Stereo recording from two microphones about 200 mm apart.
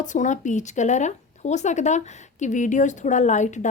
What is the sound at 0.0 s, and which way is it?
Speech, 40° left (ahead or behind).